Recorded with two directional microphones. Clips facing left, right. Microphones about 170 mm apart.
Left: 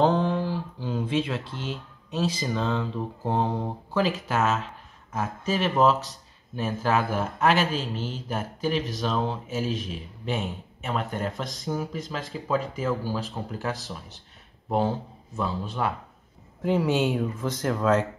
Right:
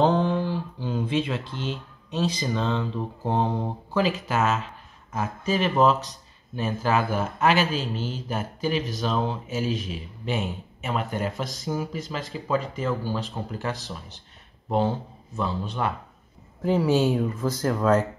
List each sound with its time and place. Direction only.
0.0 s speech: centre (ahead or behind)
16.8 s speech: 20° left (ahead or behind)
17.1 s speech: 5° right (ahead or behind)